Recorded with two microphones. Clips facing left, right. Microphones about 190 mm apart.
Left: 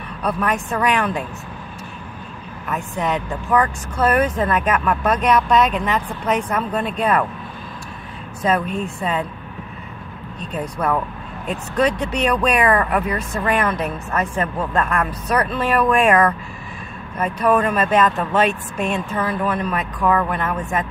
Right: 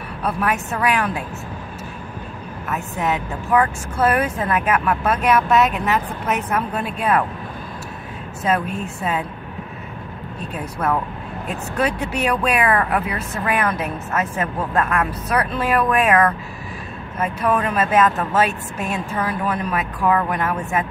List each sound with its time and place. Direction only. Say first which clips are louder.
0.2 s speech: left 1 dB; 5° right (ahead or behind)
2.7 s a woman's voice: left 1 dB; 5° right (ahead or behind)
8.6 s speech: left 1 dB; 5° right (ahead or behind)
10.4 s speech: left 1 dB; 10° right (ahead or behind)
17.2 s speech: left 3 dB; 5° right (ahead or behind)